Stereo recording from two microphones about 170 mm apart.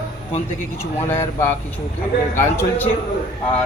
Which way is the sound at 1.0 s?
15° left (ahead or behind).